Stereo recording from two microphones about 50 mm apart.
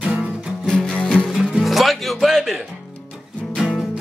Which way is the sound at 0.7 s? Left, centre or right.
Centre.